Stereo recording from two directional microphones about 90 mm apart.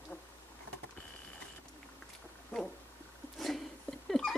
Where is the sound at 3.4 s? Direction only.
Centre (ahead or behind).